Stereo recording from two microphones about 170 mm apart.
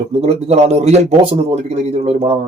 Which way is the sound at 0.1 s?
40° right (ahead or behind).